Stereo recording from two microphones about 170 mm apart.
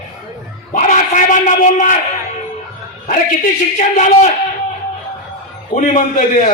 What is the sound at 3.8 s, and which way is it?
Speech, 45° left (ahead or behind).